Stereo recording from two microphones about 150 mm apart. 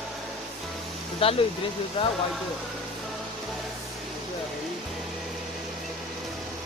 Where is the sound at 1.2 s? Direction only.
35° left (ahead or behind).